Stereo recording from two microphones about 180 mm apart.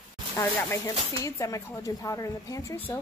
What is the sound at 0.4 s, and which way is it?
Speech, 15° left (ahead or behind).